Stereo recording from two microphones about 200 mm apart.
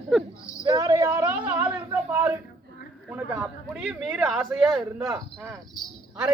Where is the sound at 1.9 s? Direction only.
10° right (ahead or behind).